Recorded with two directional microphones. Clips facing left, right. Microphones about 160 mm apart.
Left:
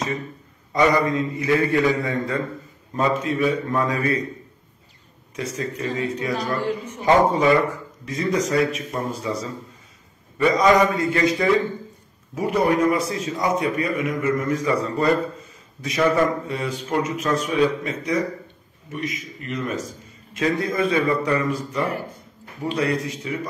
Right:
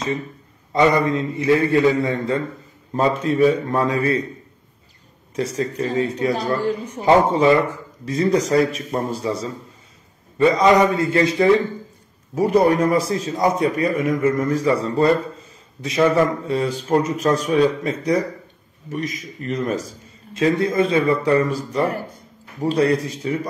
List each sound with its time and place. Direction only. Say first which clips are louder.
0.7 s a man's voice: right 2 dB; 25° right (ahead or behind)
5.3 s a man's voice: right 5 dB; 35° right (ahead or behind)